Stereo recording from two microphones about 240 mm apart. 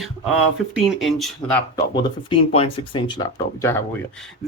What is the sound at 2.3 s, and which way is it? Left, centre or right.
Speech, left.